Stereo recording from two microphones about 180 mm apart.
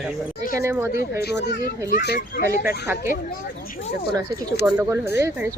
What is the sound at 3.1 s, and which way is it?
Speech, 50° left (ahead or behind).